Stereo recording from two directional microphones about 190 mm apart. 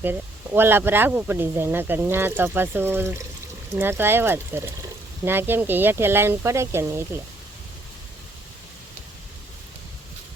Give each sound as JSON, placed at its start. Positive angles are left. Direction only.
{"t": 0.0, "sound": "speech", "side_deg": -10}